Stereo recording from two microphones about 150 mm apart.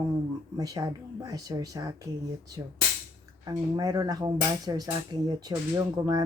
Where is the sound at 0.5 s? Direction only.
25° right (ahead or behind).